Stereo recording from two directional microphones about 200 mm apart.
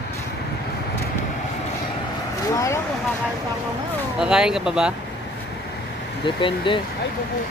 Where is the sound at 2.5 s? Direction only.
15° left (ahead or behind).